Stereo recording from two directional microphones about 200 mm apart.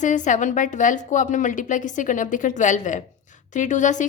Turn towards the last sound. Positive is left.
turn(degrees=40)  # may be behind; listen again after turning